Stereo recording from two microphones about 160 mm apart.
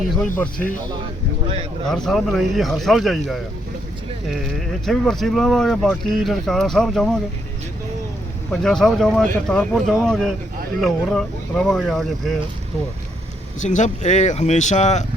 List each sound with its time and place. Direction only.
1.9 s speech: centre (ahead or behind)
4.9 s speech: centre (ahead or behind)
8.4 s speech: 5° left (ahead or behind)
13.6 s speech: 50° left (ahead or behind)